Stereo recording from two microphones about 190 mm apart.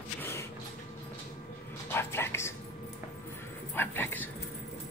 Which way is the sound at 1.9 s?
10° left (ahead or behind).